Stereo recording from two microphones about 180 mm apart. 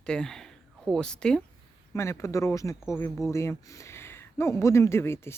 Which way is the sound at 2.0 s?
15° left (ahead or behind).